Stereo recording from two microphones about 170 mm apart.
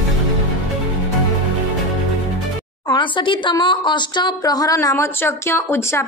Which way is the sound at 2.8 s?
30° left (ahead or behind).